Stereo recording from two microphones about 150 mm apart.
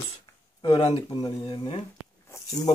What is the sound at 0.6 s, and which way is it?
Speech, 40° left (ahead or behind).